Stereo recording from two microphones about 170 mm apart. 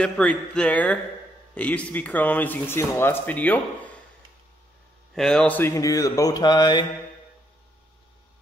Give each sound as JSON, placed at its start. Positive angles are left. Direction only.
{"t": 0.0, "sound": "speech", "side_deg": 5}
{"t": 5.1, "sound": "mantra", "side_deg": 5}